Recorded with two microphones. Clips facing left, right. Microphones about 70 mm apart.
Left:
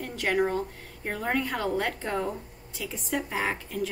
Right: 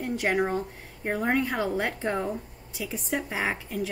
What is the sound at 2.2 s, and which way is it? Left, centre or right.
A woman's voice, centre.